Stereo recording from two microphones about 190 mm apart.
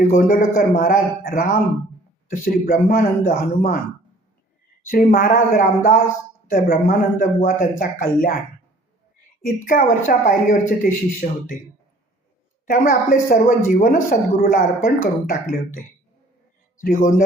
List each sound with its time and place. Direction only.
0.1 s speech: 45° left (ahead or behind)
4.9 s speech: 50° left (ahead or behind)
9.4 s speech: 45° left (ahead or behind)
12.6 s speech: 45° left (ahead or behind)
16.8 s speech: 45° left (ahead or behind)